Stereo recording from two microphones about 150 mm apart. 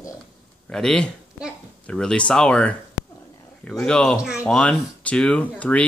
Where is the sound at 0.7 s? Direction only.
5° left (ahead or behind).